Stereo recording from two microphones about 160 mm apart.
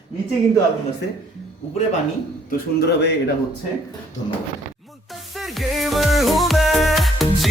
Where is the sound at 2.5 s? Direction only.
90° left.